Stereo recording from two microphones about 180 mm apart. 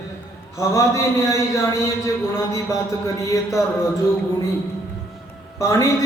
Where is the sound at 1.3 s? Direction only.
15° left (ahead or behind).